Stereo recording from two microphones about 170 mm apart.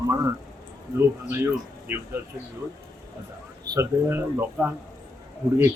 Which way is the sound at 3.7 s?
15° right (ahead or behind).